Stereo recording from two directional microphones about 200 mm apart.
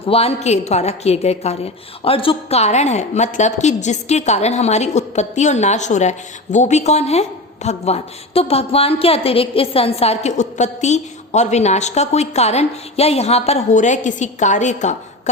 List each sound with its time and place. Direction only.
0.0 s a woman's voice: 30° left (ahead or behind)